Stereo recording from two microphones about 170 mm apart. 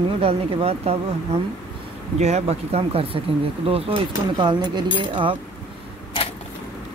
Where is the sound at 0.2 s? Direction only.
35° right (ahead or behind).